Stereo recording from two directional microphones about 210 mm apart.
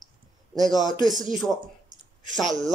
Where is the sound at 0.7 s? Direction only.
Centre (ahead or behind).